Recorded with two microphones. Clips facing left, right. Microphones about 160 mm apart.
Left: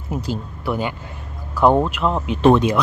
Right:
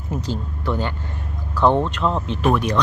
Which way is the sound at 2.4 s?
25° left (ahead or behind).